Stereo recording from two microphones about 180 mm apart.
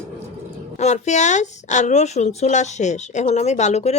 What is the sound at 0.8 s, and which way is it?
Speech, 40° left (ahead or behind).